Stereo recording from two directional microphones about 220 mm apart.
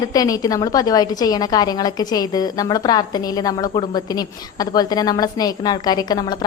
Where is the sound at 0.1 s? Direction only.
15° left (ahead or behind).